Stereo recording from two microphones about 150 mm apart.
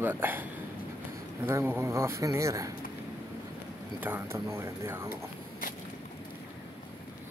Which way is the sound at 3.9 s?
15° right (ahead or behind).